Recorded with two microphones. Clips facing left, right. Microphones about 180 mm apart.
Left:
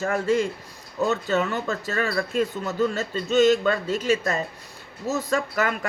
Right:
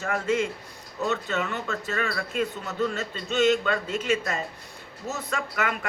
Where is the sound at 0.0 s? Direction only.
35° left (ahead or behind).